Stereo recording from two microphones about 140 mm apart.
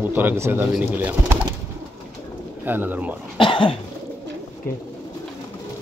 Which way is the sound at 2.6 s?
15° right (ahead or behind).